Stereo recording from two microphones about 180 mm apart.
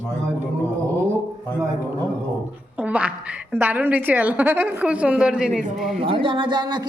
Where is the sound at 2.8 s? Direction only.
5° right (ahead or behind).